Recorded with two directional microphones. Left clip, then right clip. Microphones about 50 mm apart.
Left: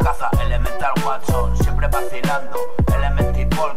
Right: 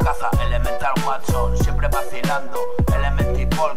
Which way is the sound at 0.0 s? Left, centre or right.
Left.